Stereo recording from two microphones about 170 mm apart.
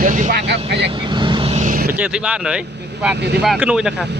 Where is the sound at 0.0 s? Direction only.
50° right (ahead or behind).